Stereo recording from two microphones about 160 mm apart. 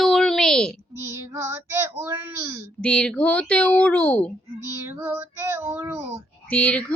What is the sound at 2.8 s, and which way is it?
Speech, 5° left (ahead or behind).